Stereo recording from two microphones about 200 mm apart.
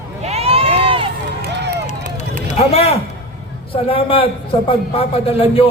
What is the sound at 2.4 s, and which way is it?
A man's voice, 30° left (ahead or behind).